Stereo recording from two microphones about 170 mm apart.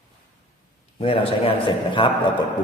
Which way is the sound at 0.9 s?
30° left (ahead or behind).